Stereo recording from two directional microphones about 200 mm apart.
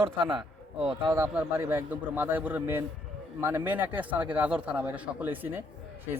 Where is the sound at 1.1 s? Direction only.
10° right (ahead or behind).